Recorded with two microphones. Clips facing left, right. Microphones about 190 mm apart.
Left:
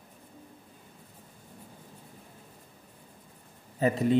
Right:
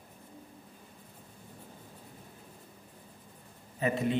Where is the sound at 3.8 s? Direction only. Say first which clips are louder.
Left 4 dB; 35° left (ahead or behind).